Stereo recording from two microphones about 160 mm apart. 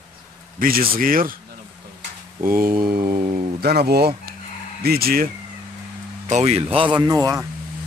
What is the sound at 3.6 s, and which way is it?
Speech, 80° right.